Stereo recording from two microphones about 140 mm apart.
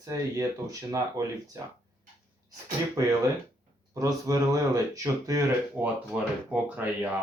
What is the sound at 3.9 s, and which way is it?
Speech, 25° right (ahead or behind).